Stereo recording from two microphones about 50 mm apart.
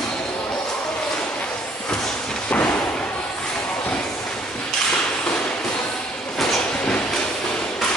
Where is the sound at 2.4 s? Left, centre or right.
Left.